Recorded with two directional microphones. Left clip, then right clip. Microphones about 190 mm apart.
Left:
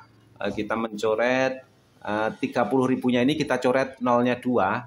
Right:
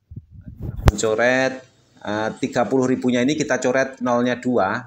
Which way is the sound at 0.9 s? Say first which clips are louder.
Right 5 dB; 10° right (ahead or behind).